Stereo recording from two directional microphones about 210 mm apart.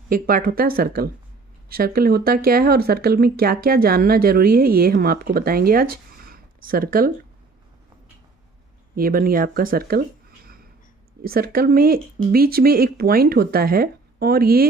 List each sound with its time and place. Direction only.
0.1 s speech: 45° right (ahead or behind)
8.9 s speech: 45° right (ahead or behind)